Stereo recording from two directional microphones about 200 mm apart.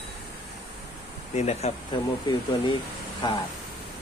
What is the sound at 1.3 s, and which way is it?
Speech, 35° left (ahead or behind).